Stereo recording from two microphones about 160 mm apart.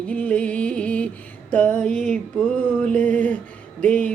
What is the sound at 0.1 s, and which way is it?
Music, 10° left (ahead or behind).